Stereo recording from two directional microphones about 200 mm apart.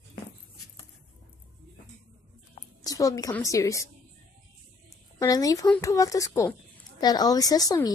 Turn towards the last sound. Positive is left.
turn(degrees=20)  # may be behind; listen again after turning